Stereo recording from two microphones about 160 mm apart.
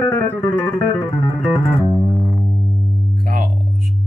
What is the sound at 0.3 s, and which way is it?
Music, 10° left (ahead or behind).